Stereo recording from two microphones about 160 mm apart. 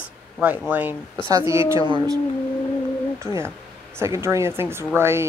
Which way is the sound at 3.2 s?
15° right (ahead or behind).